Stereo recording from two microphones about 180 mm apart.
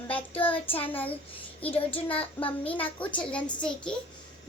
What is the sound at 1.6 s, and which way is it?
A child's voice, 10° left (ahead or behind).